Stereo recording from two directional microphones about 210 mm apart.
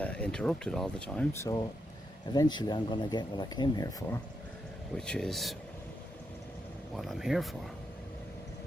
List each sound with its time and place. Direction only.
0.0 s speech: 5° left (ahead or behind)
4.9 s speech: 5° left (ahead or behind)
6.9 s speech: centre (ahead or behind)